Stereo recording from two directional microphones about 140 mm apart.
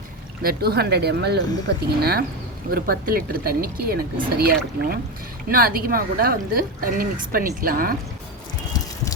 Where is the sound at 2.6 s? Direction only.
90° right.